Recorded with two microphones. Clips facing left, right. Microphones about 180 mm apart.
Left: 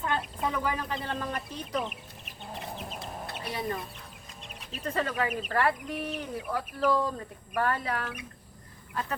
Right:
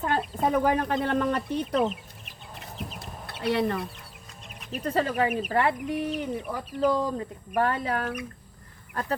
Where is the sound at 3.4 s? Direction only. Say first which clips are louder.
Right 9 dB; 70° right (ahead or behind).